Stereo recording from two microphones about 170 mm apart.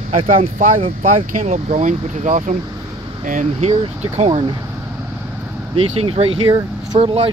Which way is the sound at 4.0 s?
35° right (ahead or behind).